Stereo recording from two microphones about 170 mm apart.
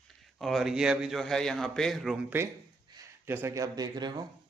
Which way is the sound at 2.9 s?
15° right (ahead or behind).